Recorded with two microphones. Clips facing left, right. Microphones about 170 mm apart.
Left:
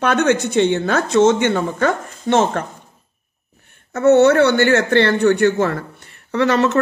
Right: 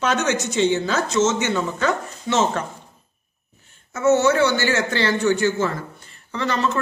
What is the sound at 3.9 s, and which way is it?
Speech, 60° left (ahead or behind).